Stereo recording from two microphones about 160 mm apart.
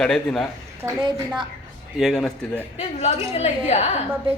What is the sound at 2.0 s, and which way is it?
Speech, centre (ahead or behind).